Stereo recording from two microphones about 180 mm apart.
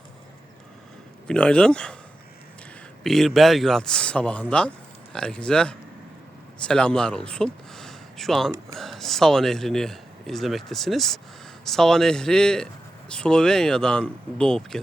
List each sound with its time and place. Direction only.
1.3 s a man's voice: 5° left (ahead or behind)
3.0 s a man's voice: centre (ahead or behind)